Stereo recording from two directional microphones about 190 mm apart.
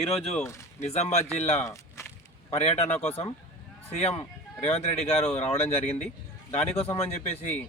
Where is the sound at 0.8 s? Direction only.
35° left (ahead or behind).